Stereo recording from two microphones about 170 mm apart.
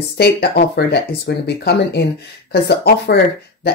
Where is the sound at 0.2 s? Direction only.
70° left (ahead or behind).